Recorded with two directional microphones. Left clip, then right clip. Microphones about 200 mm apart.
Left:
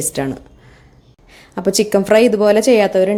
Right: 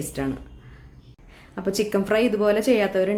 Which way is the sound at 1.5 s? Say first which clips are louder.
Left 9 dB; 30° left (ahead or behind).